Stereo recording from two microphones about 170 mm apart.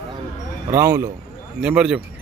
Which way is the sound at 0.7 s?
15° right (ahead or behind).